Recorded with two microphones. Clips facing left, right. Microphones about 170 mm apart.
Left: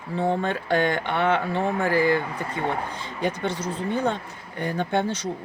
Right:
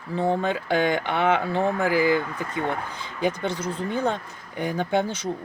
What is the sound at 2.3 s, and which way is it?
Speech, 30° left (ahead or behind).